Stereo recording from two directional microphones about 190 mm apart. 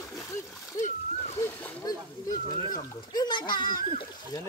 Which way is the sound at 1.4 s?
10° left (ahead or behind).